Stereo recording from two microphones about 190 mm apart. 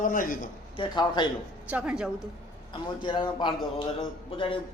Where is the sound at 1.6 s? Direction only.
5° right (ahead or behind).